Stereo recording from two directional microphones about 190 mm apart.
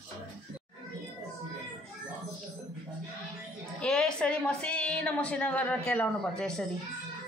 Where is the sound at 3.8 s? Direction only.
5° left (ahead or behind).